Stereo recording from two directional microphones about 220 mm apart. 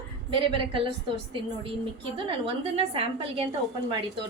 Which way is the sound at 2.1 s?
25° right (ahead or behind).